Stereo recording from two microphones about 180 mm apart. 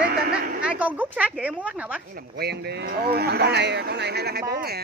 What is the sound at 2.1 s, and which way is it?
Speech, 60° right (ahead or behind).